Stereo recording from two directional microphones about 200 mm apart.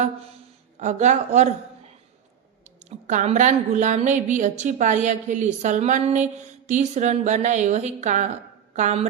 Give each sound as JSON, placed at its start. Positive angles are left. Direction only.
{"t": 0.8, "sound": "a woman's voice", "side_deg": -35}
{"t": 2.6, "sound": "a woman's voice", "side_deg": -35}